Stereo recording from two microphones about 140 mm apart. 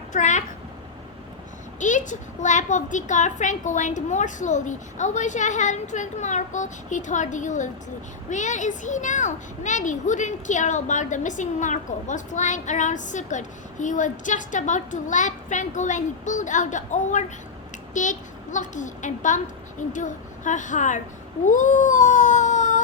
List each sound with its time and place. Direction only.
0.1 s a child's voice: 60° left (ahead or behind)
1.8 s a child's voice: 60° left (ahead or behind)
21.4 s cat: 65° left (ahead or behind)